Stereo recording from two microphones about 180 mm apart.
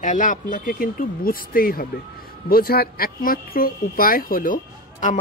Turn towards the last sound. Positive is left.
turn(degrees=45)  # may be behind; listen again after turning